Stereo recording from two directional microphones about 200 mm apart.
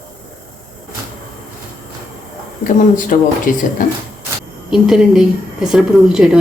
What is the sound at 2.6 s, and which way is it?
Speech, 40° left (ahead or behind).